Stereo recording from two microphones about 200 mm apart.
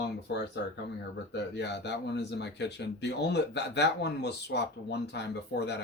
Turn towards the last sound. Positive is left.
turn(degrees=55)  # may be behind; listen again after turning